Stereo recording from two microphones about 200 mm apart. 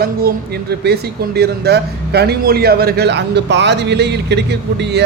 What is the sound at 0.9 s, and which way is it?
A man's voice, 55° right (ahead or behind).